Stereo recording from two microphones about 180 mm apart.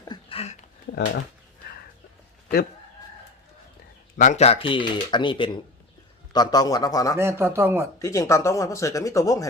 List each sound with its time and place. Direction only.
0.0 s a sound: 25° left (ahead or behind)
4.2 s speech: 40° left (ahead or behind); by 7.2 s 20° left (ahead or behind)
7.2 s speech: 15° right (ahead or behind)
7.9 s speech: 20° left (ahead or behind)